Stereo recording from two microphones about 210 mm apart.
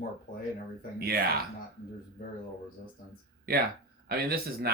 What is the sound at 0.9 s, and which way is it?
Speech, 45° right (ahead or behind).